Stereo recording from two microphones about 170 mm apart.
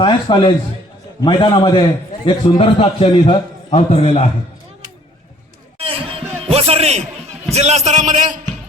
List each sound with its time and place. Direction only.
0.0 s a man's voice: 25° left (ahead or behind)
5.8 s a sound: 35° right (ahead or behind)
7.5 s a man's voice: 40° right (ahead or behind)